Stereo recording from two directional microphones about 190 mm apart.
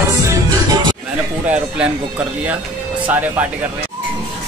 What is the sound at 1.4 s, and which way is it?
Speech, 5° right (ahead or behind).